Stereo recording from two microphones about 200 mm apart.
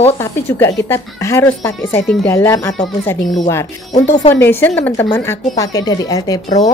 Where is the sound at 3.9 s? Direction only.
35° left (ahead or behind).